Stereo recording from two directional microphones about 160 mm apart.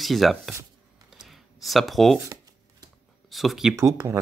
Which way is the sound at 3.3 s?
Centre (ahead or behind).